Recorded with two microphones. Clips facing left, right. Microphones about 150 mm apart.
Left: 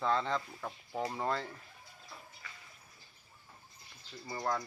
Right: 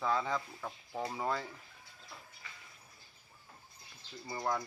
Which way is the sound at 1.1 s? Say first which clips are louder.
Right 1 dB; 5° right (ahead or behind).